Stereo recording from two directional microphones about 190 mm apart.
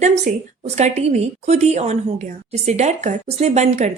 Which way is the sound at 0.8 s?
35° right (ahead or behind).